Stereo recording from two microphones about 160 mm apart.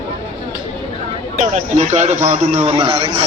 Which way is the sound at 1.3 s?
45° right (ahead or behind).